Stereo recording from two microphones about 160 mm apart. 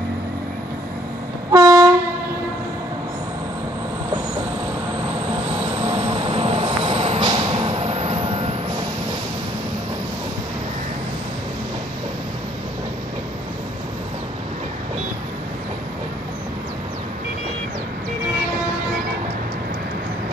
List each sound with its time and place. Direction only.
1.5 s train: 20° right (ahead or behind)
5.5 s train: 30° right (ahead or behind)